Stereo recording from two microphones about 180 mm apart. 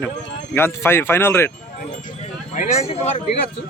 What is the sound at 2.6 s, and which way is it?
Speech, 35° left (ahead or behind).